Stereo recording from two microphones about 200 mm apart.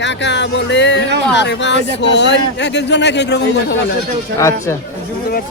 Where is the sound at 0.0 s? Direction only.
60° left (ahead or behind).